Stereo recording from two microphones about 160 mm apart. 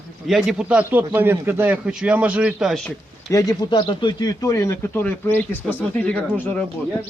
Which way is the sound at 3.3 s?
20° left (ahead or behind).